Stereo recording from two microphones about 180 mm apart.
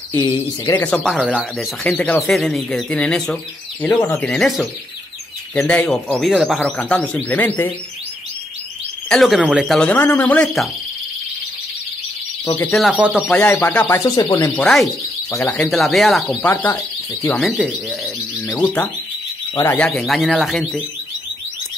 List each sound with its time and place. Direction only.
0.7 s speech: 5° left (ahead or behind)
9.1 s speech: centre (ahead or behind)
9.8 s speech: 10° left (ahead or behind)
12.7 s speech: 5° right (ahead or behind)
13.5 s speech: 10° left (ahead or behind)
14.5 s speech: centre (ahead or behind)
15.3 s speech: 15° left (ahead or behind)
19.5 s speech: 15° left (ahead or behind)
19.9 s speech: centre (ahead or behind)